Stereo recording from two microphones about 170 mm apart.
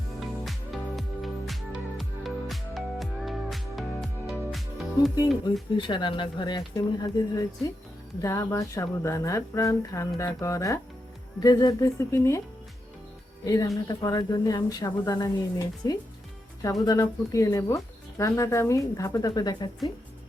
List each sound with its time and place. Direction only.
0.2 s music: centre (ahead or behind)
5.7 s speech: 30° left (ahead or behind)
13.4 s speech: 20° left (ahead or behind)